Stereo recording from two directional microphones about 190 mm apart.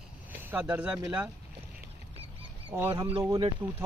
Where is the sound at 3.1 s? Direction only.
20° right (ahead or behind).